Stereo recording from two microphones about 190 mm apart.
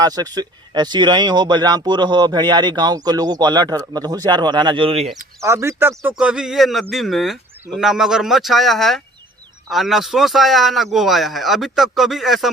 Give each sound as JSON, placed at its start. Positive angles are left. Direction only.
{"t": 0.0, "sound": "speech", "side_deg": -20}
{"t": 5.4, "sound": "a man's voice", "side_deg": -15}